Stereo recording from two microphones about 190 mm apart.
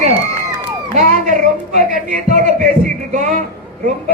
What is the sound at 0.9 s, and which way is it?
Speech, 45° right (ahead or behind).